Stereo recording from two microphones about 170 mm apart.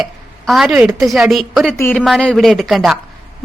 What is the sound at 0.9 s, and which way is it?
A woman's voice, centre (ahead or behind).